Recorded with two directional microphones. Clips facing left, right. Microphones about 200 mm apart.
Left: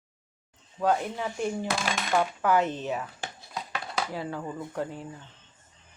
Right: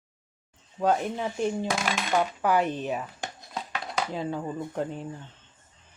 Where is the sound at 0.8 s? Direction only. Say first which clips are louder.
Right 1 dB; 20° right (ahead or behind).